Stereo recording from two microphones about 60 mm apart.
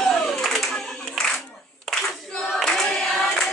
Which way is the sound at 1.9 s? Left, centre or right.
Centre.